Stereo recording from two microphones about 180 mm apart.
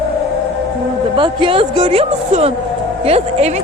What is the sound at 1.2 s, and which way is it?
Speech, 30° right (ahead or behind).